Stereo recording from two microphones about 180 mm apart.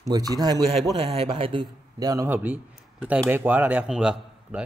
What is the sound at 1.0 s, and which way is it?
A man's voice, 30° right (ahead or behind).